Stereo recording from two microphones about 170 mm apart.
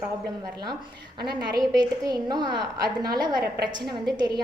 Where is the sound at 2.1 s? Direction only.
25° right (ahead or behind).